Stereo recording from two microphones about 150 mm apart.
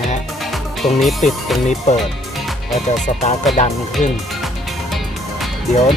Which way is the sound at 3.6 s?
50° left (ahead or behind).